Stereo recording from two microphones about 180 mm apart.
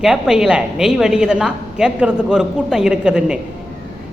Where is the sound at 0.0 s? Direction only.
5° right (ahead or behind).